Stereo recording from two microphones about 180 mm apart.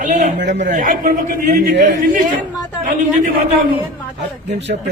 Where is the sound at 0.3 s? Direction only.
70° right (ahead or behind).